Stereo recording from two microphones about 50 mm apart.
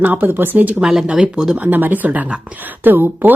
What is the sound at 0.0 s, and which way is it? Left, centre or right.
Speech, right.